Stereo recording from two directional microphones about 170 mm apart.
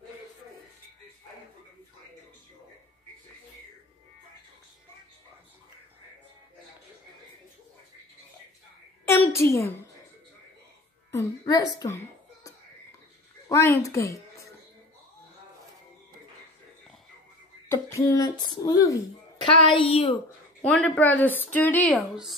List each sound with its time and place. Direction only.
9.3 s a child's voice: 15° left (ahead or behind)
11.1 s a sound: 20° left (ahead or behind)
13.5 s a woman's voice: 15° left (ahead or behind)
17.6 s speech: 15° left (ahead or behind)
19.5 s a woman's voice: 30° left (ahead or behind)
20.6 s a woman's voice: 5° left (ahead or behind)